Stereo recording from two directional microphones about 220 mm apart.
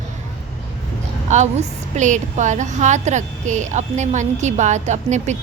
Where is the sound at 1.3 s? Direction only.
30° right (ahead or behind).